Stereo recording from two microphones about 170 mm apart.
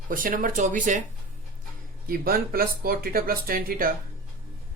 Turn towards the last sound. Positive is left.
turn(degrees=-55)  # may be behind; listen again after turning